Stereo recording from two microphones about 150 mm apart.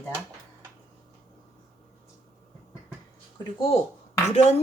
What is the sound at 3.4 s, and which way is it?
Speech, 40° left (ahead or behind).